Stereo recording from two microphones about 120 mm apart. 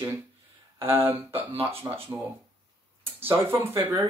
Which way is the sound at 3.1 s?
20° right (ahead or behind).